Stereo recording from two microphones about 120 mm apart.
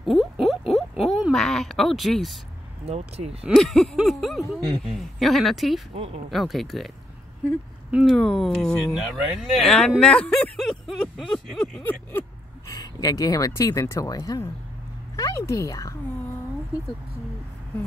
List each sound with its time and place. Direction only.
0.0 s a sound: centre (ahead or behind)
2.8 s speech: 60° right (ahead or behind)
3.5 s speech: centre (ahead or behind)
7.9 s speech: centre (ahead or behind)
11.8 s vehicle: 15° left (ahead or behind)
12.7 s speech: 35° left (ahead or behind)